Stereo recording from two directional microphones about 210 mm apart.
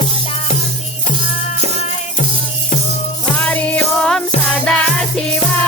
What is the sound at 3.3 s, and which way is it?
Music, 5° left (ahead or behind).